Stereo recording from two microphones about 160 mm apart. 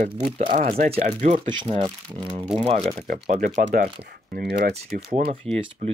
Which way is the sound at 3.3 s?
50° right (ahead or behind).